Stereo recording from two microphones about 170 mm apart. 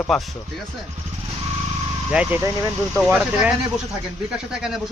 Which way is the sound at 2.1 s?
5° right (ahead or behind).